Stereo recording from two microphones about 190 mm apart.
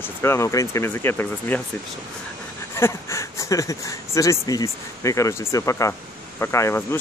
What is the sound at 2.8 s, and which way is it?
Speech, 15° left (ahead or behind).